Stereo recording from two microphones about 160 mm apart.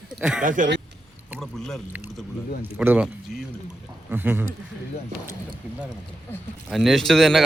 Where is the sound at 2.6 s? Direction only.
10° right (ahead or behind).